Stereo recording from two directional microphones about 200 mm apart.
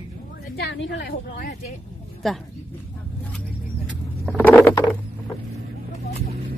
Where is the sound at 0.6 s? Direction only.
60° left (ahead or behind).